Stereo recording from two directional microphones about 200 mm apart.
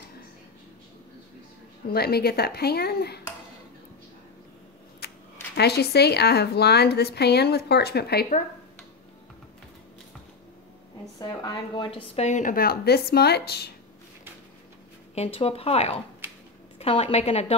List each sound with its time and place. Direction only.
1.9 s speech: 50° left (ahead or behind)
5.6 s speech: 55° left (ahead or behind)
11.1 s a woman's voice: 20° left (ahead or behind); by 13.7 s 55° left (ahead or behind)
15.1 s a woman's voice: 30° left (ahead or behind)